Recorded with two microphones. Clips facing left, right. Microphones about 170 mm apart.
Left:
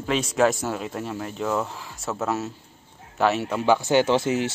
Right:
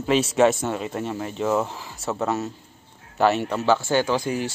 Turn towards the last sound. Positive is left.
turn(degrees=20)  # may be behind; listen again after turning